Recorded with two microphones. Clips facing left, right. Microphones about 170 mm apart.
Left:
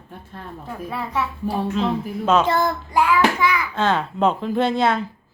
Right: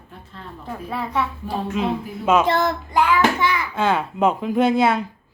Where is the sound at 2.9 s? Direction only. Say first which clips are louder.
Even; 5° left (ahead or behind).